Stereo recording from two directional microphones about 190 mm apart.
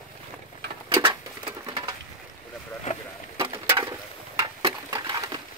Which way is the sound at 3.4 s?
20° right (ahead or behind).